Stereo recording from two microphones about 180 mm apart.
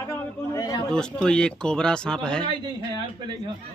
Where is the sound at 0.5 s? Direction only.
20° left (ahead or behind).